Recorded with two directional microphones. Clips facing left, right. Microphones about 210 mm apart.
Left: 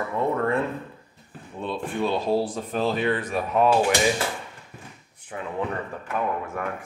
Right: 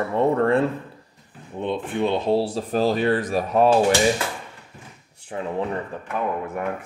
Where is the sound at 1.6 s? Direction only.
20° right (ahead or behind).